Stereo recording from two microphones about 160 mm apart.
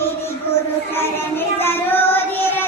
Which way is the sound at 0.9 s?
15° left (ahead or behind).